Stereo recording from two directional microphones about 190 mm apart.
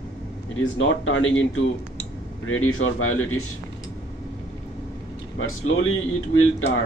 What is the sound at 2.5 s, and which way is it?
Speech, 90° left.